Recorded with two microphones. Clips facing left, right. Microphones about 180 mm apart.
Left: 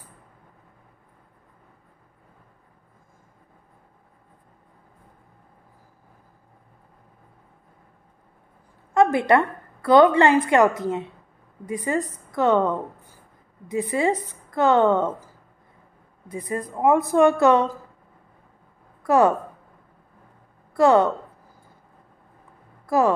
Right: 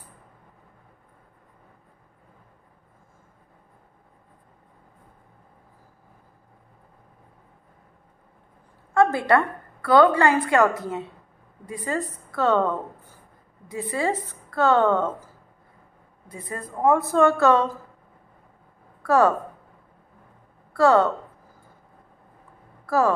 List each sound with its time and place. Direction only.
8.9 s a woman's voice: 20° left (ahead or behind)
16.3 s a woman's voice: 20° left (ahead or behind)
19.0 s a woman's voice: 15° left (ahead or behind)
20.7 s a woman's voice: 20° left (ahead or behind)
22.8 s speech: 15° left (ahead or behind)